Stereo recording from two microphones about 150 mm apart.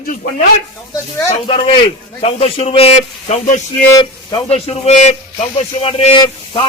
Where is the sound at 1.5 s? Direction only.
40° left (ahead or behind).